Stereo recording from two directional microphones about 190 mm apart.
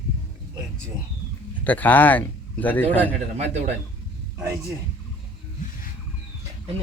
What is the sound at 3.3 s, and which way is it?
Speech, 35° right (ahead or behind).